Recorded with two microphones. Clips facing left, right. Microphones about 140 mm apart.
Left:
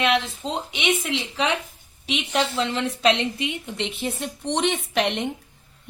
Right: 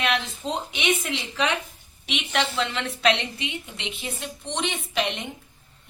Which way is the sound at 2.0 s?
30° left (ahead or behind).